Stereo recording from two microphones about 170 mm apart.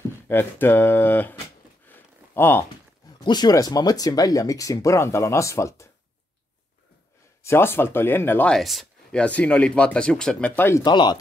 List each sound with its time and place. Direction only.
0.3 s speech: 10° left (ahead or behind)
1.9 s a sound: 15° left (ahead or behind)
3.3 s speech: 25° left (ahead or behind)
7.4 s speech: 15° left (ahead or behind)
10.8 s speech: 25° left (ahead or behind)